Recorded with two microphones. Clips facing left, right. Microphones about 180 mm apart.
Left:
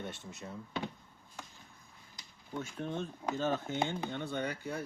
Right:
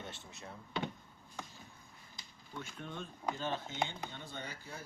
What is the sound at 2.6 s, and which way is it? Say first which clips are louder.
Speech: left 7 dB; 40° left (ahead or behind).